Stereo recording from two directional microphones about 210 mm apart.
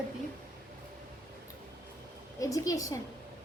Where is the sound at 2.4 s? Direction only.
15° left (ahead or behind).